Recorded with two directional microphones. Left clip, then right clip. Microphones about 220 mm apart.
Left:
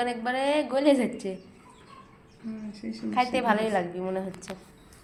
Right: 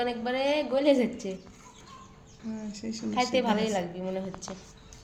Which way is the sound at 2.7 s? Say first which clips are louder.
Right 1 dB; 55° right (ahead or behind).